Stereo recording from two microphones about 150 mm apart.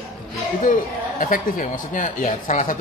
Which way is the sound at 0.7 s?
60° left (ahead or behind).